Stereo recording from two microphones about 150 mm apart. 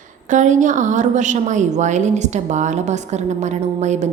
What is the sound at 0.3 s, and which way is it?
A woman's voice, 55° right (ahead or behind).